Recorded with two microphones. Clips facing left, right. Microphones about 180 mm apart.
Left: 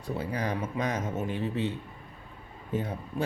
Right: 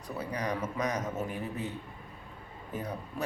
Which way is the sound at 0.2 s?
30° left (ahead or behind).